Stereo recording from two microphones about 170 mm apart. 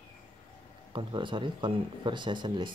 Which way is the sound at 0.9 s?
30° right (ahead or behind).